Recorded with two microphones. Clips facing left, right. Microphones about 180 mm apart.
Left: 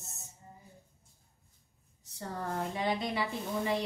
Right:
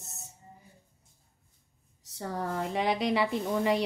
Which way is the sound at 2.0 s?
75° right (ahead or behind).